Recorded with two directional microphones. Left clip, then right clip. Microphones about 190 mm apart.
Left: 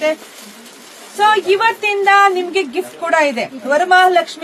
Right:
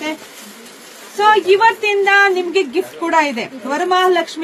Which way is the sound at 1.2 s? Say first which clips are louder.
Right 1 dB; 20° left (ahead or behind).